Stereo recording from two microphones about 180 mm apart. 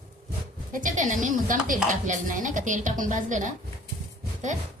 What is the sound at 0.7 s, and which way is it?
A woman's voice, 45° right (ahead or behind).